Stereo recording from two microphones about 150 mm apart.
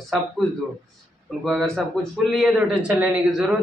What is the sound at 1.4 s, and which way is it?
A man's voice, centre (ahead or behind).